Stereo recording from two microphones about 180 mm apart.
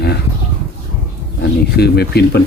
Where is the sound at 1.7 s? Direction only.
65° left (ahead or behind).